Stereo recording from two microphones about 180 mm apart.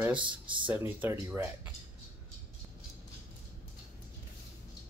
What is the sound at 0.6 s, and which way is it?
Speech, 10° right (ahead or behind).